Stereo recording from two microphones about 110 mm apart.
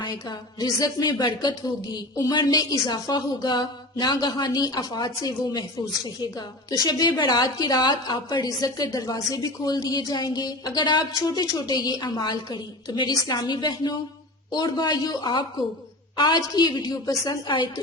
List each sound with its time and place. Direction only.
0.0 s a woman's voice: 40° left (ahead or behind)